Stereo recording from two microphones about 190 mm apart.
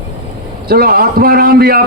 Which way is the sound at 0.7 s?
50° right (ahead or behind).